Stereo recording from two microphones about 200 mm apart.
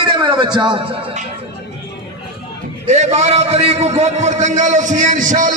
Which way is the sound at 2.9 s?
35° right (ahead or behind).